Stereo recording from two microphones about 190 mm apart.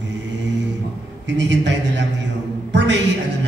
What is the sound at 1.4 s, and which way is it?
Music, 70° right (ahead or behind).